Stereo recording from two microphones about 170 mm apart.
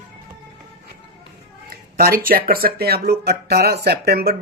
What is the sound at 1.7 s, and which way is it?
Speech, 60° right (ahead or behind).